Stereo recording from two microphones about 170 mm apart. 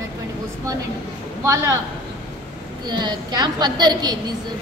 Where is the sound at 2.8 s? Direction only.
25° right (ahead or behind).